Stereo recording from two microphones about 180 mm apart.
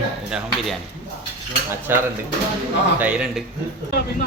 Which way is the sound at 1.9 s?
10° right (ahead or behind).